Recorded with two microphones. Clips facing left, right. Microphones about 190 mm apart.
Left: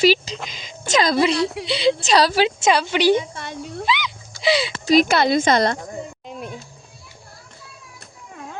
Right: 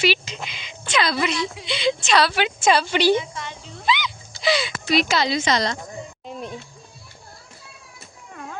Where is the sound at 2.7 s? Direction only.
15° left (ahead or behind).